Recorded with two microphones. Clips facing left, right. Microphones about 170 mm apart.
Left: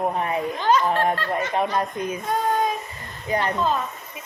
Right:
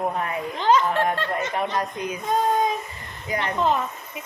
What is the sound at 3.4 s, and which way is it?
Speech, 20° right (ahead or behind).